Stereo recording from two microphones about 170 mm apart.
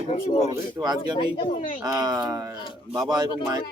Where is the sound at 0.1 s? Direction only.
40° left (ahead or behind).